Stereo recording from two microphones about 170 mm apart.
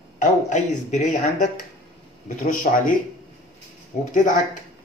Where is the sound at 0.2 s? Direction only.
45° left (ahead or behind).